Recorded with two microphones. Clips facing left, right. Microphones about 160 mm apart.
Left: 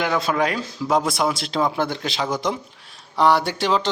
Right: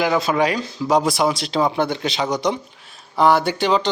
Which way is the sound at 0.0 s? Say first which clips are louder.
Right 3 dB; 5° right (ahead or behind).